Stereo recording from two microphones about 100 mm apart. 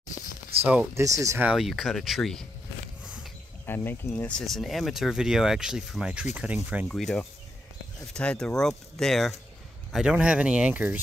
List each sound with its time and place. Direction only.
0.9 s speech: 35° right (ahead or behind)
1.4 s speech: 5° right (ahead or behind)
3.6 s speech: 20° left (ahead or behind)
4.3 s speech: 5° left (ahead or behind); by 6.9 s 15° right (ahead or behind)
6.9 s speech: 5° left (ahead or behind)
9.9 s speech: 10° right (ahead or behind)